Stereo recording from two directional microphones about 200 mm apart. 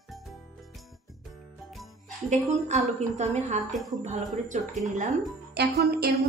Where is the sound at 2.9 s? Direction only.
35° right (ahead or behind).